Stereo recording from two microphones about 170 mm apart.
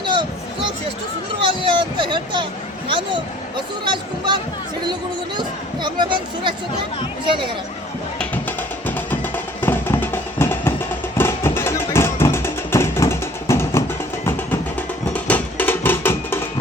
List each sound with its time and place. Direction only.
0.0 s a sound: 25° right (ahead or behind)
1.4 s speech: 30° right (ahead or behind)
3.8 s speech: 25° right (ahead or behind)
5.4 s speech: 25° right (ahead or behind)
8.2 s music: 10° left (ahead or behind)